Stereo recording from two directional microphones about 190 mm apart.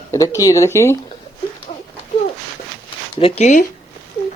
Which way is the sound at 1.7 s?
45° left (ahead or behind).